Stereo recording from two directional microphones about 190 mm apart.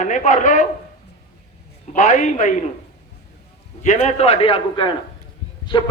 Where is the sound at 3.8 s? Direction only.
40° left (ahead or behind).